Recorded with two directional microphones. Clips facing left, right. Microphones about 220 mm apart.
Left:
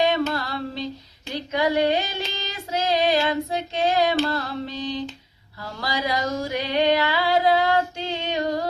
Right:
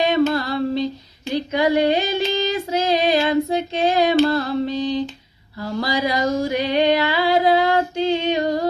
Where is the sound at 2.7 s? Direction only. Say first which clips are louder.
Right 2 dB; 15° right (ahead or behind).